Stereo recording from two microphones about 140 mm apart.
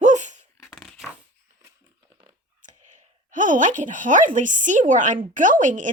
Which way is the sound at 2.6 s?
65° right (ahead or behind).